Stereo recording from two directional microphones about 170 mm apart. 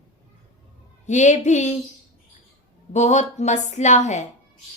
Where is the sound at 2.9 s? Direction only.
45° left (ahead or behind).